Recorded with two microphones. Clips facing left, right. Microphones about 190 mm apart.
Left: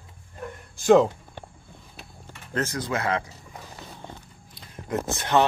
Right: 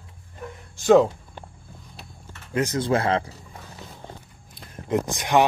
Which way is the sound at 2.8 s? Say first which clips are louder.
Right 5 dB; 30° right (ahead or behind).